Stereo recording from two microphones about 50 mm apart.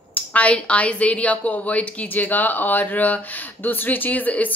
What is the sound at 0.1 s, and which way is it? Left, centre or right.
A woman's voice, left.